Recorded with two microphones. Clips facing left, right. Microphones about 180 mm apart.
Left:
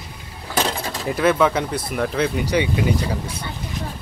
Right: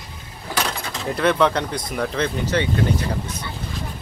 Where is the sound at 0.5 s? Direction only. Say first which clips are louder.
Left 3 dB; 30° left (ahead or behind).